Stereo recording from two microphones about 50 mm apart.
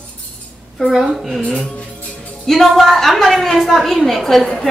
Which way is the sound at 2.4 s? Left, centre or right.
Centre.